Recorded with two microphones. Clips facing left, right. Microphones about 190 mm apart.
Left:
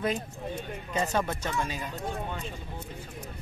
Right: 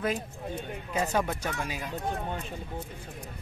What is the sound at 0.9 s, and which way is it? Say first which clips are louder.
Speech: even; 10° right (ahead or behind).